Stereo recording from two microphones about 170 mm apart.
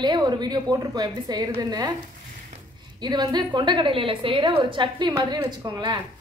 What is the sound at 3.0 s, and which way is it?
A woman's voice, 25° right (ahead or behind).